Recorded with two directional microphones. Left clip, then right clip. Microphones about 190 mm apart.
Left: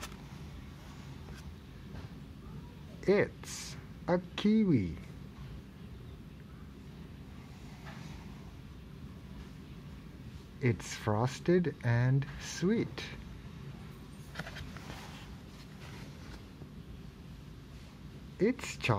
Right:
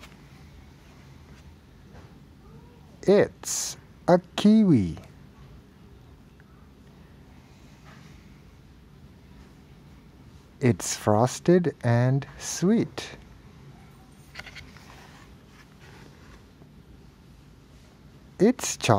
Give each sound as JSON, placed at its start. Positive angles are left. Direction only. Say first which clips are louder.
{"t": 3.0, "sound": "speech", "louder": "right 9 dB", "side_deg": -35}
{"t": 10.6, "sound": "speech", "louder": "right 10 dB", "side_deg": -40}
{"t": 18.4, "sound": "speech", "louder": "right 9 dB", "side_deg": -45}